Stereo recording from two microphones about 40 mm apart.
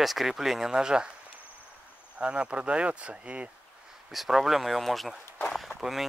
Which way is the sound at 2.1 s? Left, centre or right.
Right.